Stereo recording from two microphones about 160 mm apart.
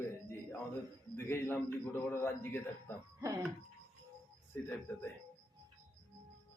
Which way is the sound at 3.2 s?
20° right (ahead or behind).